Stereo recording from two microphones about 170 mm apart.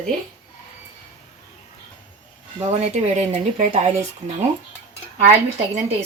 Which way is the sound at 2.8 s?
40° right (ahead or behind).